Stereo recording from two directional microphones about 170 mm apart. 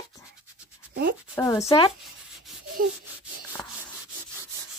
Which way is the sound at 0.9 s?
60° right (ahead or behind).